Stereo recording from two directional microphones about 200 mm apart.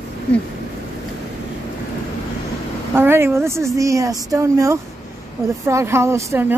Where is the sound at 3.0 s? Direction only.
10° right (ahead or behind).